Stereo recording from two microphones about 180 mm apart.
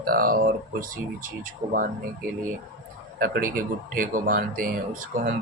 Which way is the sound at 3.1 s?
55° right (ahead or behind).